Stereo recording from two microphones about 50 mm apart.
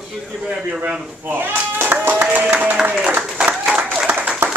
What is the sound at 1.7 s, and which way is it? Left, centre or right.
Clapping, right.